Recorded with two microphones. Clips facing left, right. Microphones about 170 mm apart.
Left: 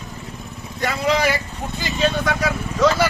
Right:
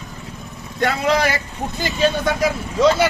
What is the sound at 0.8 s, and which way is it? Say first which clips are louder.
Speech: right 2 dB; 60° right (ahead or behind).